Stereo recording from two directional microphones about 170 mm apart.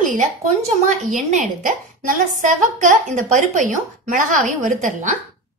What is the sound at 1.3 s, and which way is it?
A woman's voice, 50° right (ahead or behind).